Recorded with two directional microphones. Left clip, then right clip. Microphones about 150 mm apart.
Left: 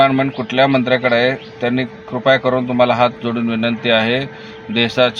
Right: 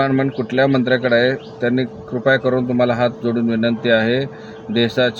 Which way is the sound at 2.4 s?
80° left.